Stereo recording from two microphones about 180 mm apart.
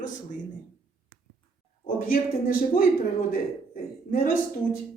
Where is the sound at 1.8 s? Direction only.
50° left (ahead or behind).